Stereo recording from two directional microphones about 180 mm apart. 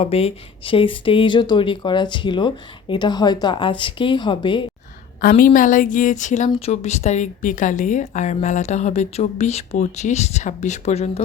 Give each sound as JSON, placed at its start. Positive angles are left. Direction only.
{"t": 0.0, "sound": "speech", "side_deg": 35}
{"t": 5.5, "sound": "speech", "side_deg": 45}